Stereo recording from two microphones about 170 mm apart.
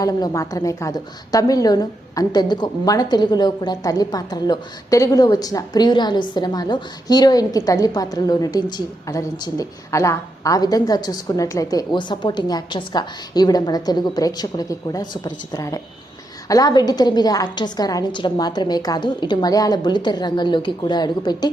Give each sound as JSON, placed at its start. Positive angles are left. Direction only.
{"t": 0.0, "sound": "a woman's voice", "side_deg": 20}